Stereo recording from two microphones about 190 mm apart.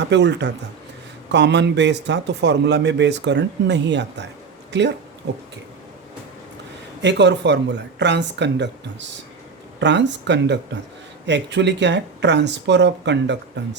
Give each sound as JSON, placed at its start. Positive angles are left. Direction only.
{"t": 0.1, "sound": "a man's voice", "side_deg": -65}
{"t": 7.0, "sound": "a man's voice", "side_deg": -65}